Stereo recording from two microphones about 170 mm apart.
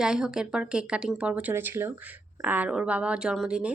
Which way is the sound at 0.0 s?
5° right (ahead or behind).